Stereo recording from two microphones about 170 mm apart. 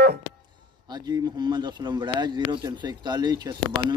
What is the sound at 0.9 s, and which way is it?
Speech, 25° right (ahead or behind).